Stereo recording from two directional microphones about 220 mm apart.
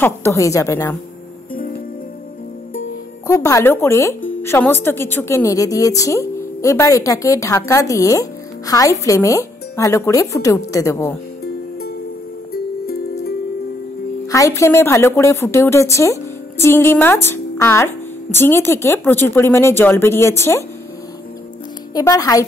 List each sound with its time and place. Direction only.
0.0 s a woman's voice: 10° left (ahead or behind)
3.3 s a woman's voice: 15° left (ahead or behind)
12.5 s music: 45° left (ahead or behind)
14.2 s a woman's voice: 15° left (ahead or behind)
21.9 s a woman's voice: 15° left (ahead or behind)